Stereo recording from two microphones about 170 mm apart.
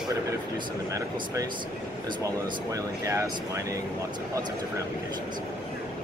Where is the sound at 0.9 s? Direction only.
20° right (ahead or behind).